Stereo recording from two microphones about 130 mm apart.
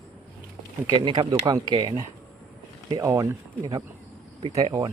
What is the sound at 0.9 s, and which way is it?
Speech, 35° right (ahead or behind).